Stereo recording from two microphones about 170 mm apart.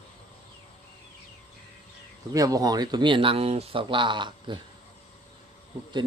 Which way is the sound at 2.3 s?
20° right (ahead or behind).